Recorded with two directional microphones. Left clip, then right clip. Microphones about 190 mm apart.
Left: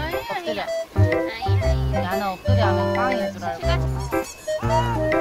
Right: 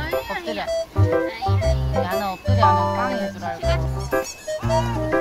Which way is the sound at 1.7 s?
20° right (ahead or behind).